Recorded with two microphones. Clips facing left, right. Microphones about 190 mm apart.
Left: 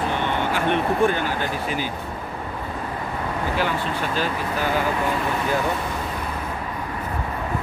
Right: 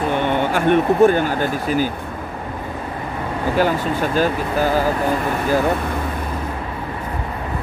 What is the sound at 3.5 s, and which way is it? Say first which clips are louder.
Speech: right 9 dB; 45° right (ahead or behind).